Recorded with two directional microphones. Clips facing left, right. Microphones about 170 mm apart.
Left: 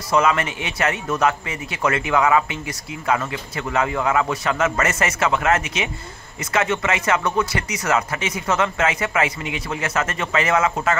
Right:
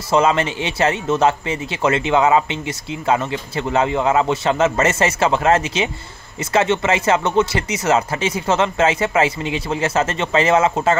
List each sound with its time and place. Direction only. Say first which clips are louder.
0.1 s a man's voice: right 3 dB; 30° right (ahead or behind)